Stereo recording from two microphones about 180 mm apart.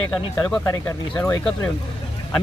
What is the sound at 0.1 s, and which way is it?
Speech, 5° left (ahead or behind).